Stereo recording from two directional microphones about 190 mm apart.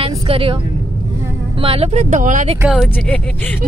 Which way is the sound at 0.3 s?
30° right (ahead or behind).